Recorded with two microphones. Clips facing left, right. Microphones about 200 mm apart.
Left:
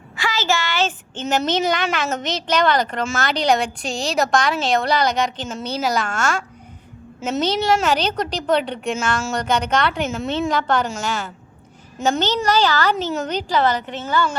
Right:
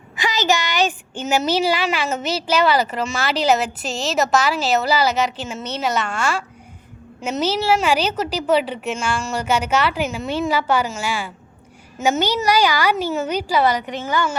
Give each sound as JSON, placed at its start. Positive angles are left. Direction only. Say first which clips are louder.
{"t": 0.2, "sound": "a woman's voice", "louder": "right 2 dB", "side_deg": -20}